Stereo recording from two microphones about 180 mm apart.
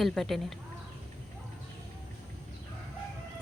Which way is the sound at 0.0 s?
Centre (ahead or behind).